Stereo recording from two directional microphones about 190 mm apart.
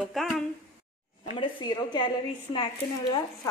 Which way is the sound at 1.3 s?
25° left (ahead or behind).